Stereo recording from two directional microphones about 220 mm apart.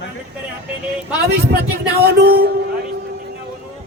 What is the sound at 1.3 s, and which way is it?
Music, 45° right (ahead or behind).